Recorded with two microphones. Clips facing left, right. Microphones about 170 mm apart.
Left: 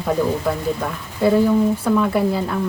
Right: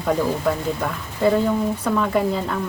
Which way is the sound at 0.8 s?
5° left (ahead or behind).